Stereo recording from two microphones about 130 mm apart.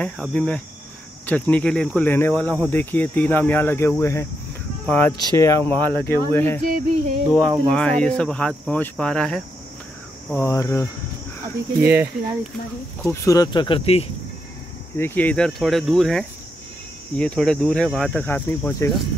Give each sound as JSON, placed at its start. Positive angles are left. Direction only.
{"t": 0.0, "sound": "speech", "side_deg": 10}
{"t": 4.0, "sound": "cricket", "side_deg": 20}
{"t": 4.8, "sound": "speech", "side_deg": 10}
{"t": 5.2, "sound": "cricket", "side_deg": 25}
{"t": 5.9, "sound": "speech", "side_deg": -35}
{"t": 6.3, "sound": "speech", "side_deg": 15}
{"t": 6.6, "sound": "a sound", "side_deg": -90}
{"t": 7.7, "sound": "speech", "side_deg": 5}
{"t": 10.3, "sound": "cricket", "side_deg": 20}
{"t": 11.8, "sound": "speech", "side_deg": -15}
{"t": 13.0, "sound": "speech", "side_deg": 20}
{"t": 15.0, "sound": "speech", "side_deg": 15}
{"t": 18.2, "sound": "speech", "side_deg": 15}